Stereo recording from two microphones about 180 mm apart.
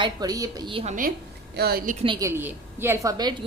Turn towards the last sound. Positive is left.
turn(degrees=-20)  # may be behind; listen again after turning